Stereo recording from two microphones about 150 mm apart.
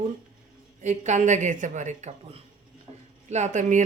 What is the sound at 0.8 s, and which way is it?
Speech, 50° right (ahead or behind).